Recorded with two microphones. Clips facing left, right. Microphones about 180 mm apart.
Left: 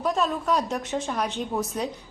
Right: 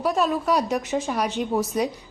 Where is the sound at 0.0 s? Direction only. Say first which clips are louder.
Right 3 dB; 10° right (ahead or behind).